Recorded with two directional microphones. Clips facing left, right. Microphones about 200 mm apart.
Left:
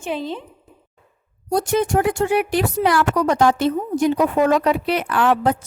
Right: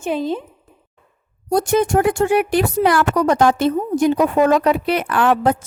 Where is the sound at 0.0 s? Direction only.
45° right (ahead or behind).